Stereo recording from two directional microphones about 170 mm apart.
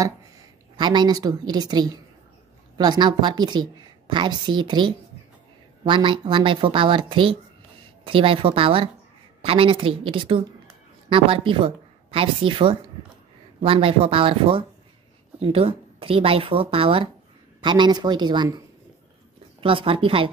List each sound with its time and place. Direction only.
0.7 s a woman's voice: 25° right (ahead or behind)
19.6 s a woman's voice: 30° right (ahead or behind)